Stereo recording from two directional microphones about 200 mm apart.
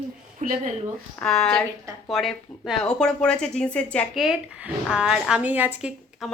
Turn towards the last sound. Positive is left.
turn(degrees=-5)  # may be behind; listen again after turning